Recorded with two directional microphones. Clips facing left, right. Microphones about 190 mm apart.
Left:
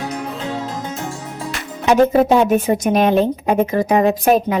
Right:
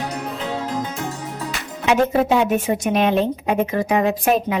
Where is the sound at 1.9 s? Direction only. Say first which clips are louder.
Left 4 dB; 40° left (ahead or behind).